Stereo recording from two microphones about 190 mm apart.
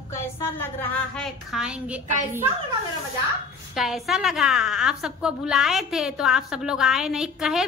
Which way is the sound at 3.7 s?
Centre (ahead or behind).